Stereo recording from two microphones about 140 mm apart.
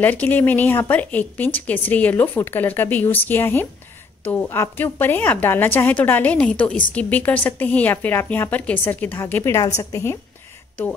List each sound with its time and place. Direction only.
0.0 s a woman's voice: 10° left (ahead or behind)